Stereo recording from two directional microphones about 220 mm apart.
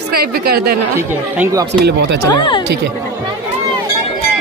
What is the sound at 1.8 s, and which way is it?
Speech, 50° right (ahead or behind).